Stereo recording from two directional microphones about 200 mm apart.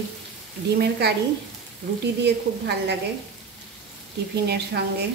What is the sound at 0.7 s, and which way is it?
Speech, 55° right (ahead or behind).